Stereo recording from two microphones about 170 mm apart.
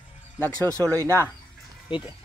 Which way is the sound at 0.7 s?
20° right (ahead or behind).